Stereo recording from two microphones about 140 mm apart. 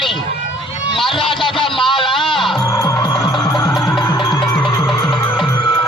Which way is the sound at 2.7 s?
25° left (ahead or behind).